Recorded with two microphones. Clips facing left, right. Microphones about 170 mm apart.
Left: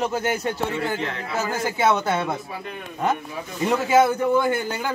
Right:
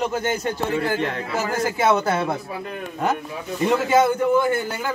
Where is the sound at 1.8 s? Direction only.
5° right (ahead or behind).